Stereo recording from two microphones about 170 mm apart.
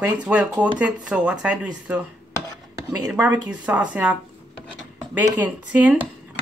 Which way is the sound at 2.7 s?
15° right (ahead or behind).